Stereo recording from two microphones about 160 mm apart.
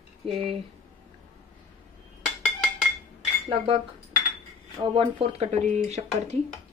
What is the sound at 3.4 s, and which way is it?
Speech, 30° right (ahead or behind).